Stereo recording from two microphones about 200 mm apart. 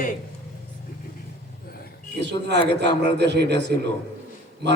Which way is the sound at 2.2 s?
60° right (ahead or behind).